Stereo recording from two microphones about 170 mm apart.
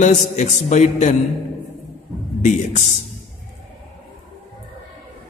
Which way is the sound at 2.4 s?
45° left (ahead or behind).